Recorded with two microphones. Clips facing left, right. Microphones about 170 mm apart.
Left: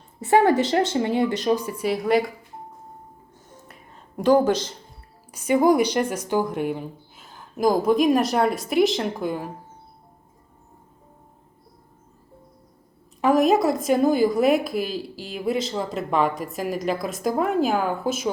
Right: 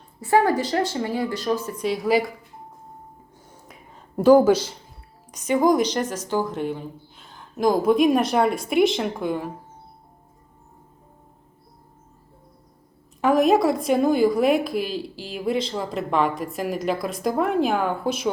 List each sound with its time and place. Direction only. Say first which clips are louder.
0.2 s a woman's voice: left 2 dB; 25° left (ahead or behind); by 2.3 s centre (ahead or behind)
4.2 s speech: right 4 dB; 10° right (ahead or behind)
5.3 s a woman's voice: left 1 dB; 10° left (ahead or behind)
13.2 s a woman's voice: even; centre (ahead or behind)